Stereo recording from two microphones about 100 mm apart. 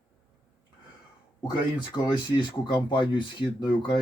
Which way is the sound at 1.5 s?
50° left (ahead or behind).